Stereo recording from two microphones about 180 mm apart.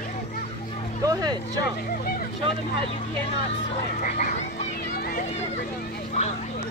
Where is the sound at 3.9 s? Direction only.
45° left (ahead or behind).